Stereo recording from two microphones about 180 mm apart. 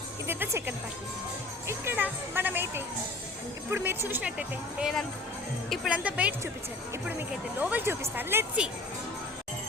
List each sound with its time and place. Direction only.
0.3 s speech: 10° right (ahead or behind)